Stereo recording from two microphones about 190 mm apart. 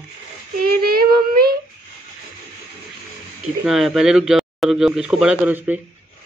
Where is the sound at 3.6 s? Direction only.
Centre (ahead or behind).